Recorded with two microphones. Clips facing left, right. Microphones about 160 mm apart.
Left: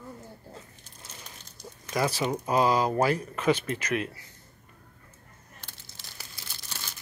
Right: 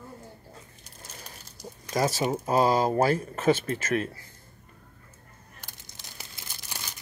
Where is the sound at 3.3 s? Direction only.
40° right (ahead or behind).